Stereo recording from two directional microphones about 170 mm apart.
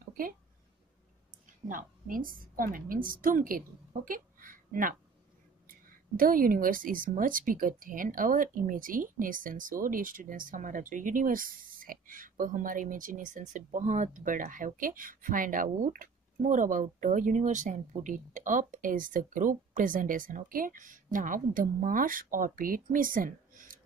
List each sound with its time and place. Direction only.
1.7 s a woman's voice: 55° right (ahead or behind)